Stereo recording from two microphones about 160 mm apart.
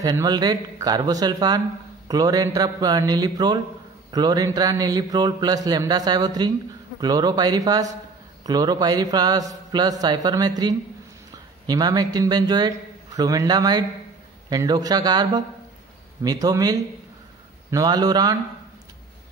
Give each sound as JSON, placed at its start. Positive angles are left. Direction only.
{"t": 0.0, "sound": "speech", "side_deg": -20}